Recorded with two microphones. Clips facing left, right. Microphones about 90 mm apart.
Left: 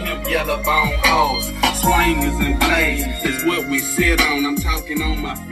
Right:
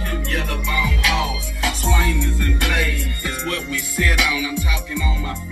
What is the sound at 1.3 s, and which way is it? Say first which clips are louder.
Music: left 5 dB; 80° left.